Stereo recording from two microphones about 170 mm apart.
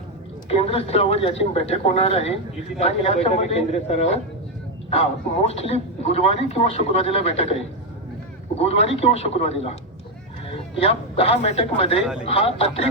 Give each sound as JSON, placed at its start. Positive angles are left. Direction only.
{"t": 0.4, "sound": "speech", "side_deg": 35}
{"t": 5.5, "sound": "speech", "side_deg": 35}
{"t": 8.6, "sound": "speech", "side_deg": 35}
{"t": 10.8, "sound": "speech", "side_deg": 35}